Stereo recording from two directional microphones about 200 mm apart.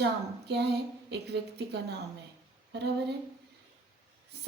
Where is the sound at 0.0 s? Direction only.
55° right (ahead or behind).